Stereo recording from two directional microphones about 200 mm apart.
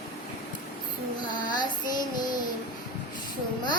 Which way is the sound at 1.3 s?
20° left (ahead or behind).